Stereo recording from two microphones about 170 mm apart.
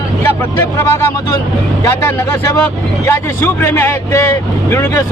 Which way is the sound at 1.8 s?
20° left (ahead or behind).